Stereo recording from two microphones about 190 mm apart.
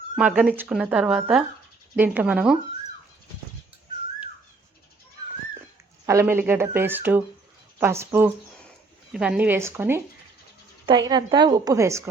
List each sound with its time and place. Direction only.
0.3 s speech: 10° right (ahead or behind)
6.1 s a woman's voice: 15° right (ahead or behind)